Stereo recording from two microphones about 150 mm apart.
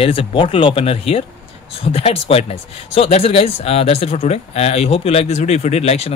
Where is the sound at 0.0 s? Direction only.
40° left (ahead or behind).